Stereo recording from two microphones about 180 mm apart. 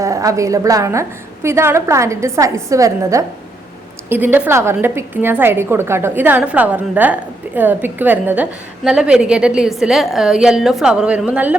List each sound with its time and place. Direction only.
0.0 s a woman's voice: 15° right (ahead or behind)